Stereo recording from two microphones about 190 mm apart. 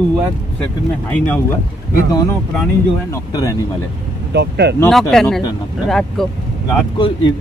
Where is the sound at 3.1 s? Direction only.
15° left (ahead or behind).